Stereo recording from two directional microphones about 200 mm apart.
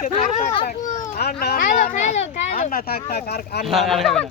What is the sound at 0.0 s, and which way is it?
Children playing, 35° left (ahead or behind).